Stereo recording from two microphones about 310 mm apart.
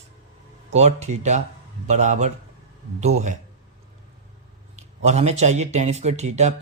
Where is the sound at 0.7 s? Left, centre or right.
Right.